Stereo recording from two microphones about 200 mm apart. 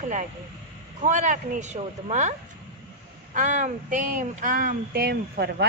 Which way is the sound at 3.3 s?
40° right (ahead or behind).